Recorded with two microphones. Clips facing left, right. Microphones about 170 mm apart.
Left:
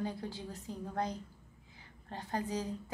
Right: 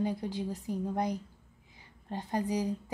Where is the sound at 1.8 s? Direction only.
15° right (ahead or behind).